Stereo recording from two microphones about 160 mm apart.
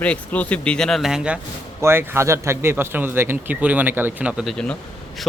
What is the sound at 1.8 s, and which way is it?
A man's voice, 15° right (ahead or behind).